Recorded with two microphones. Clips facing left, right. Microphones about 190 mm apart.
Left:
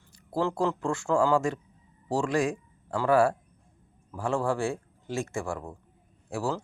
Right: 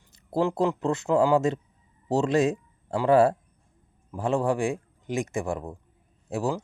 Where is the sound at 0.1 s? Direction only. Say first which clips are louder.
Right 3 dB; 20° right (ahead or behind).